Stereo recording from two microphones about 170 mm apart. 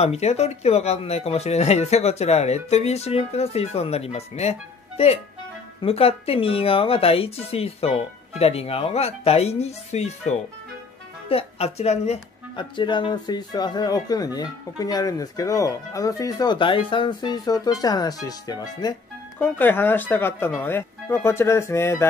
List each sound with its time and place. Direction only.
0.0 s speech: 40° left (ahead or behind); by 18.9 s 20° left (ahead or behind)
19.3 s speech: 10° left (ahead or behind)